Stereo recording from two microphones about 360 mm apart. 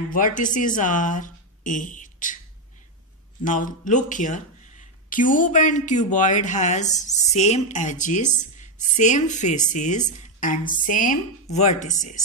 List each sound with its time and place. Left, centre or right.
0.1 s speech: left
3.4 s speech: left